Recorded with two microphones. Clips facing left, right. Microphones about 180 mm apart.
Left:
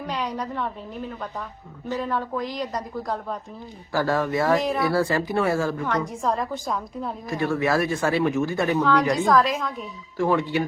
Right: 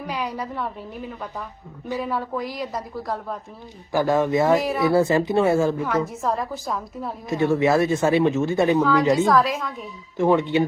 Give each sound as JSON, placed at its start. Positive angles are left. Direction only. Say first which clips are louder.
{"t": 0.0, "sound": "a woman's voice", "louder": "even", "side_deg": -10}
{"t": 3.9, "sound": "speech", "louder": "right 3 dB", "side_deg": -15}
{"t": 5.8, "sound": "a woman's voice", "louder": "right 2 dB", "side_deg": -5}
{"t": 7.3, "sound": "speech", "louder": "right 5 dB", "side_deg": -25}
{"t": 9.3, "sound": "a woman's voice", "louder": "even", "side_deg": 0}
{"t": 10.2, "sound": "speech", "louder": "right 4 dB", "side_deg": -20}